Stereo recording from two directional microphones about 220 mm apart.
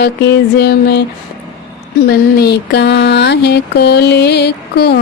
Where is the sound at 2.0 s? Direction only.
45° left (ahead or behind).